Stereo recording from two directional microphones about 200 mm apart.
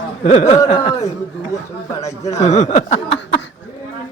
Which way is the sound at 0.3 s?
35° left (ahead or behind).